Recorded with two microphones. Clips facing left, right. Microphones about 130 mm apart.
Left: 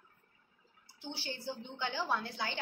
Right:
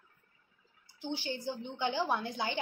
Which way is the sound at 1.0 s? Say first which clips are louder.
Right 6 dB; 15° right (ahead or behind).